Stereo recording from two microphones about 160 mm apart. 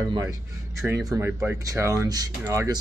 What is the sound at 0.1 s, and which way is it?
Speech, 20° right (ahead or behind).